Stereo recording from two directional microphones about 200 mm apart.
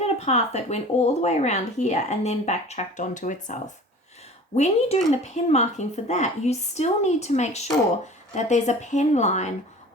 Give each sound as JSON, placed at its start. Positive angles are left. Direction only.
{"t": 0.0, "sound": "speech", "side_deg": 35}